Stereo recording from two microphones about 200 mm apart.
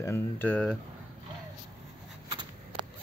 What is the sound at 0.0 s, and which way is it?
Speech, 10° left (ahead or behind).